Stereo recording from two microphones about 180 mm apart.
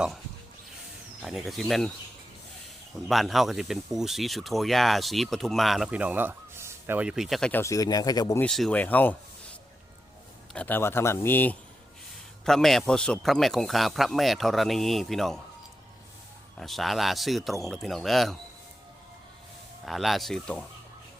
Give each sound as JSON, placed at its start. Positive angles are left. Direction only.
{"t": 1.2, "sound": "speech", "side_deg": 0}
{"t": 3.1, "sound": "speech", "side_deg": 0}
{"t": 7.6, "sound": "speech", "side_deg": 20}
{"t": 8.4, "sound": "a man's voice", "side_deg": 5}
{"t": 10.5, "sound": "a man's voice", "side_deg": 10}
{"t": 16.6, "sound": "speech", "side_deg": 0}
{"t": 19.8, "sound": "speech", "side_deg": 0}